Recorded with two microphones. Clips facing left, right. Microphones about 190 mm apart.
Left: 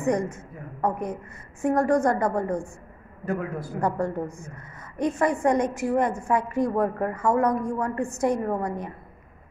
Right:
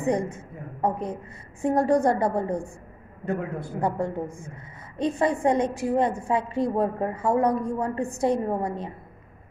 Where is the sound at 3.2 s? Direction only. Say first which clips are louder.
Even; 25° right (ahead or behind).